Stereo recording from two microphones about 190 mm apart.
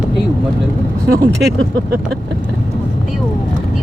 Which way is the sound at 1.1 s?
65° right (ahead or behind).